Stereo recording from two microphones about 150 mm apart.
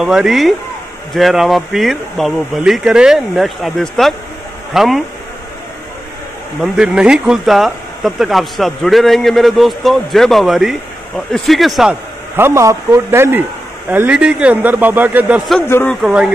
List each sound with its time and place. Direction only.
0.0 s speech: centre (ahead or behind)
6.6 s speech: 5° right (ahead or behind)
12.4 s speech: 15° right (ahead or behind)
15.6 s speech: 15° left (ahead or behind)
15.9 s speech: 5° right (ahead or behind)